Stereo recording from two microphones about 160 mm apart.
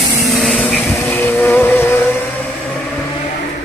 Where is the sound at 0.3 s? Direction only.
Centre (ahead or behind).